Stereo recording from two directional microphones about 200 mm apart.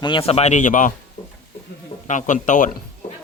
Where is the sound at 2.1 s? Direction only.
40° left (ahead or behind).